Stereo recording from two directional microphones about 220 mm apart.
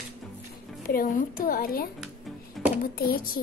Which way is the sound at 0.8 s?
40° left (ahead or behind).